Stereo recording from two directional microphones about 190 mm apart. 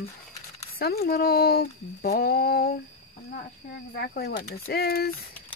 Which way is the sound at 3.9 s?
55° left (ahead or behind).